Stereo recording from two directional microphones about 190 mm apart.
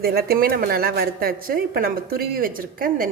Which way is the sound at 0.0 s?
55° right (ahead or behind).